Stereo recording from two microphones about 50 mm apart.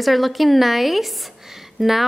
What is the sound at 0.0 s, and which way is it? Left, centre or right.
A woman's voice, centre.